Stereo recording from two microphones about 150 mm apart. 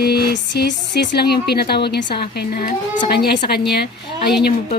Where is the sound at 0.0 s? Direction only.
90° left.